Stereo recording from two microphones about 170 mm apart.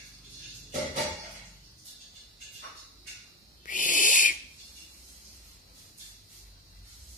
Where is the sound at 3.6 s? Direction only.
50° left (ahead or behind).